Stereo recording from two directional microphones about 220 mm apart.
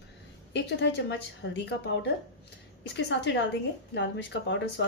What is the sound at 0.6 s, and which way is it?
A woman's voice, 55° left (ahead or behind).